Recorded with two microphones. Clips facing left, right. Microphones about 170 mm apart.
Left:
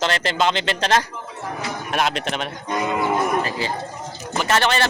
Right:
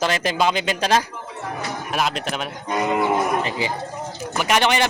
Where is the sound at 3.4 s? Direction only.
20° right (ahead or behind).